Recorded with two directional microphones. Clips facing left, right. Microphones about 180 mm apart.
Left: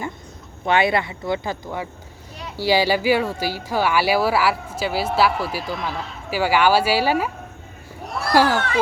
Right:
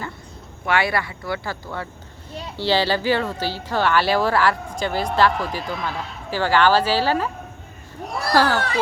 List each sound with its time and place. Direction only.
0.6 s speech: 20° left (ahead or behind)
8.3 s speech: 15° left (ahead or behind)